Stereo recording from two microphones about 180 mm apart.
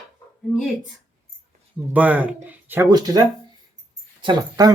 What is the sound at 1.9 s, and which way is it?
Speech, 10° right (ahead or behind).